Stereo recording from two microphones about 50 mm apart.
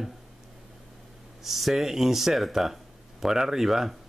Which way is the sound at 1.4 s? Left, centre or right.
Centre.